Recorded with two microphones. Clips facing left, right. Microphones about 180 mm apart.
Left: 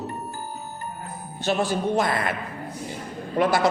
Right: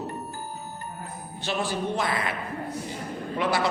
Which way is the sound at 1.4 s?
45° left (ahead or behind).